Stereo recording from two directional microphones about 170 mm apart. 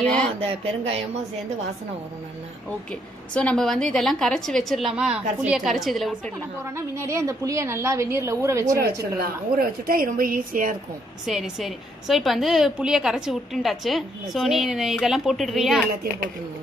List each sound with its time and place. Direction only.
0.0 s a woman's voice: 5° left (ahead or behind)
0.4 s speech: 35° right (ahead or behind)
2.9 s a woman's voice: 5° left (ahead or behind)
6.6 s a woman's voice: 15° right (ahead or behind)
9.2 s a woman's voice: 60° right (ahead or behind)
11.2 s a woman's voice: centre (ahead or behind)